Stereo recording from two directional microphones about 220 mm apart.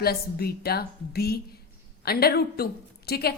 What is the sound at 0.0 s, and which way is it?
Speech, 45° left (ahead or behind).